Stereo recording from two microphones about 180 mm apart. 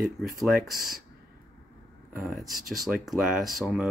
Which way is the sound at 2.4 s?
20° right (ahead or behind).